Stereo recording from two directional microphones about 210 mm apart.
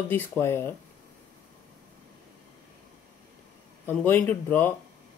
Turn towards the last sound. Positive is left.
turn(degrees=10)  # may be behind; listen again after turning